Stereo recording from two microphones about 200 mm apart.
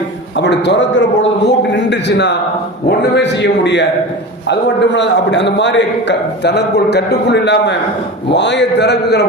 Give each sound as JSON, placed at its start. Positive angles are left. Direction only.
{"t": 0.3, "sound": "a man's voice", "side_deg": 60}